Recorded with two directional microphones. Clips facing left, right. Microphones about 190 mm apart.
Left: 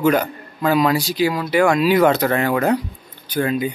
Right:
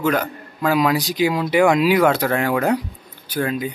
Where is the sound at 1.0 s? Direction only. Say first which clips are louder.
Even; 15° right (ahead or behind); by 3.7 s 5° left (ahead or behind).